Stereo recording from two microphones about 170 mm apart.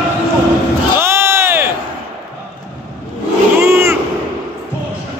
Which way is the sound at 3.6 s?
15° right (ahead or behind).